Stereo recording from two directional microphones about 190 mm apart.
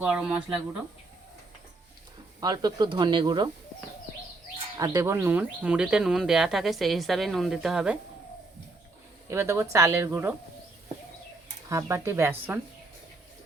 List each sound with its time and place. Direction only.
0.0 s a woman's voice: 5° right (ahead or behind)
2.4 s speech: 20° right (ahead or behind)
4.8 s speech: 15° right (ahead or behind); by 7.9 s centre (ahead or behind)
9.3 s a woman's voice: 15° right (ahead or behind)
11.7 s a woman's voice: 15° right (ahead or behind)